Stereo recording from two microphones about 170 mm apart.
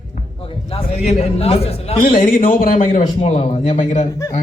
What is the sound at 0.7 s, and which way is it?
A man's voice, 35° left (ahead or behind).